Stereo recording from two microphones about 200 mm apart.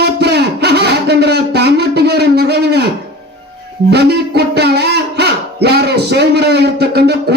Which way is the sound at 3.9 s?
55° right (ahead or behind).